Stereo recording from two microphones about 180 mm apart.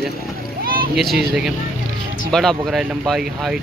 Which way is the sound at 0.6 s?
55° right (ahead or behind).